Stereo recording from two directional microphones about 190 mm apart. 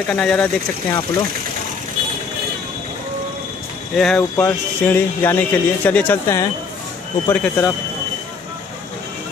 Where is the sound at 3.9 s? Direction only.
Centre (ahead or behind).